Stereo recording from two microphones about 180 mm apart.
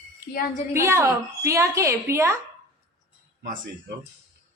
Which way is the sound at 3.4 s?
50° right (ahead or behind).